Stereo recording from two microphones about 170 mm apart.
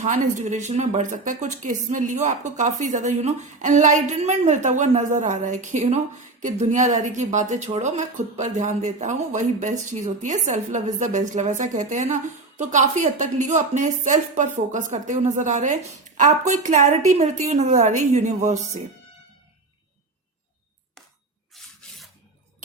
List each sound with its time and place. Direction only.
0.0 s speech: 45° right (ahead or behind)
21.5 s rub: centre (ahead or behind)